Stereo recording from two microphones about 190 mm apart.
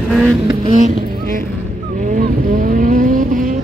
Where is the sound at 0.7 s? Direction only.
40° right (ahead or behind).